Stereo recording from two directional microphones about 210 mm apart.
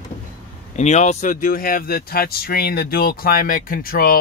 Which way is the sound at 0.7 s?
30° left (ahead or behind).